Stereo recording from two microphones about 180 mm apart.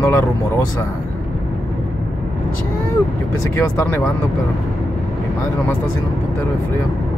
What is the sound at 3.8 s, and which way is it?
Speech, 10° left (ahead or behind).